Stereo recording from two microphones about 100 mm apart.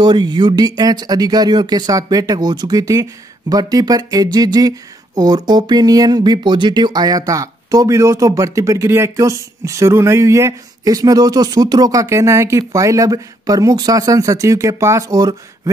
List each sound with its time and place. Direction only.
0.0 s speech: 45° right (ahead or behind)